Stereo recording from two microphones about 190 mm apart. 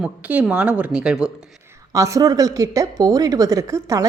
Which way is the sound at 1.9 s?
15° right (ahead or behind).